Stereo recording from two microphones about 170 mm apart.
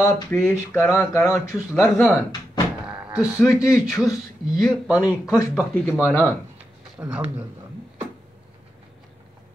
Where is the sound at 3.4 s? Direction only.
20° left (ahead or behind).